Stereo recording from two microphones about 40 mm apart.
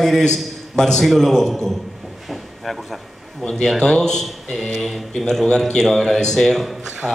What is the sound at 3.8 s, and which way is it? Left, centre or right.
Speech, centre.